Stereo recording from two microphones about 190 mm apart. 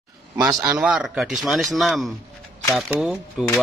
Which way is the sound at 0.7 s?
5° right (ahead or behind).